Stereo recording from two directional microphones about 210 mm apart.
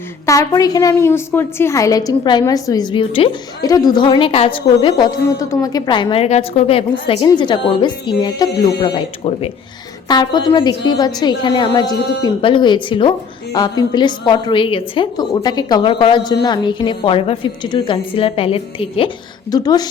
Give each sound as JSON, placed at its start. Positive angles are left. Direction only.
{"t": 0.3, "sound": "a woman's voice", "side_deg": 15}